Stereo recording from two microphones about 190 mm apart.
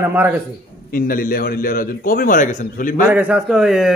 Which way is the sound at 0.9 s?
50° left (ahead or behind).